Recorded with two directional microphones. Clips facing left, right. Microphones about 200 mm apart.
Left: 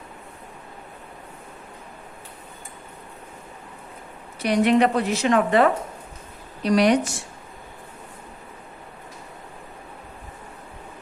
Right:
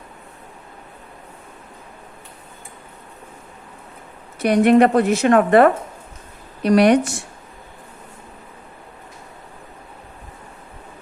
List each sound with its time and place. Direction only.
4.4 s a woman's voice: 50° right (ahead or behind)